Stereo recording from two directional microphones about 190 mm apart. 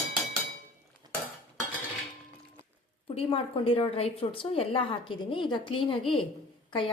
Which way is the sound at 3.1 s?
30° left (ahead or behind).